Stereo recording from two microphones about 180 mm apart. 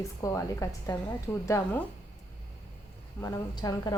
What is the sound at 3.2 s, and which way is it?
Speech, 20° left (ahead or behind).